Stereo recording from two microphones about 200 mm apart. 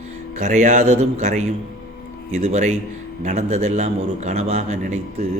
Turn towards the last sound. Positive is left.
turn(degrees=-35)  # may be behind; listen again after turning